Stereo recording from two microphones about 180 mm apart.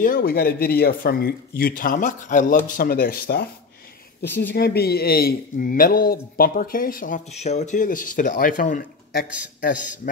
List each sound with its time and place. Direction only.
0.0 s speech: 55° left (ahead or behind)
4.2 s speech: 70° left (ahead or behind); by 9.2 s 45° left (ahead or behind)